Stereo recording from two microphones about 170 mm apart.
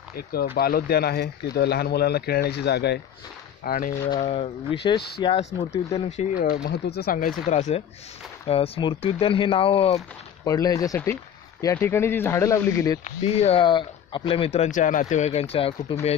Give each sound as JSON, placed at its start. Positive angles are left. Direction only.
{"t": 0.1, "sound": "speech", "side_deg": 65}
{"t": 3.6, "sound": "speech", "side_deg": 60}
{"t": 4.1, "sound": "speech", "side_deg": 35}
{"t": 6.4, "sound": "speech", "side_deg": 75}
{"t": 7.4, "sound": "speech", "side_deg": 45}
{"t": 10.4, "sound": "speech", "side_deg": 20}
{"t": 13.2, "sound": "speech", "side_deg": 35}